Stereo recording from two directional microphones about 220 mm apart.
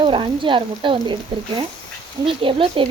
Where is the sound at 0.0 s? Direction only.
25° right (ahead or behind).